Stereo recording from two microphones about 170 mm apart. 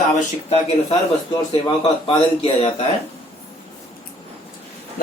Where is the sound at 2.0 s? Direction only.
30° left (ahead or behind).